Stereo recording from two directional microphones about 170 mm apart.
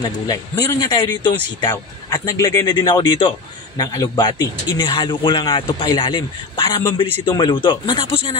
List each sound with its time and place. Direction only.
0.0 s a man's voice: 20° left (ahead or behind)